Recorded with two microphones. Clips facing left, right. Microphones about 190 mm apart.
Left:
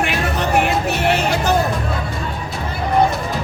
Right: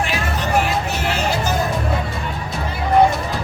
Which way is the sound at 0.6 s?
60° left (ahead or behind).